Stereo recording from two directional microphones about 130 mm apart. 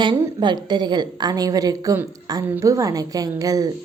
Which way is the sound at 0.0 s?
35° right (ahead or behind).